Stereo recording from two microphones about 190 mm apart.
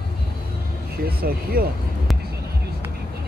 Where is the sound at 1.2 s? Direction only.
50° right (ahead or behind).